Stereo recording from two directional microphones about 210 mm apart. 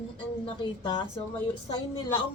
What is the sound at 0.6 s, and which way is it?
Speech, 20° left (ahead or behind).